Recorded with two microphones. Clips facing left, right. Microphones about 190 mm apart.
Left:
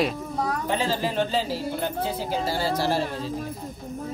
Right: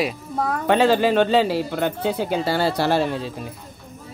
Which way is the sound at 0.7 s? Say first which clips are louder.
Right 13 dB; 70° right (ahead or behind).